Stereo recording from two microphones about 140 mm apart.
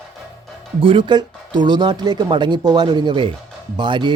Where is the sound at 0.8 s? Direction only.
35° right (ahead or behind).